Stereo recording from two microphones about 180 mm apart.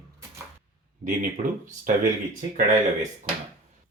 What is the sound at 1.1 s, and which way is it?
Speech, 50° right (ahead or behind).